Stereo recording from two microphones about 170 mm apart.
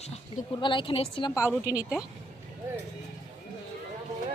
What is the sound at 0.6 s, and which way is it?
Speech, 30° left (ahead or behind).